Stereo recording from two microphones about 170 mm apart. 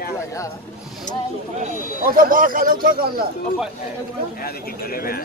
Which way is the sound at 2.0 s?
55° right (ahead or behind).